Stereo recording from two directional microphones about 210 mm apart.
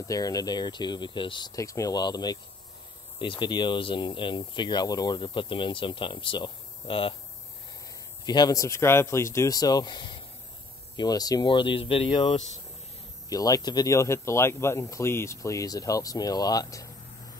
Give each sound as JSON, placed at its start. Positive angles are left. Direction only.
{"t": 0.1, "sound": "speech", "side_deg": 15}
{"t": 8.3, "sound": "speech", "side_deg": 20}
{"t": 13.3, "sound": "speech", "side_deg": 15}